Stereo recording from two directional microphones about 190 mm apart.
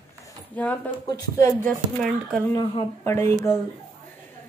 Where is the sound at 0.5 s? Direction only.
5° left (ahead or behind).